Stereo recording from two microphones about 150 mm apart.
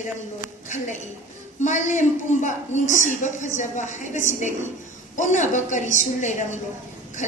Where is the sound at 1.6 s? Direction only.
55° left (ahead or behind).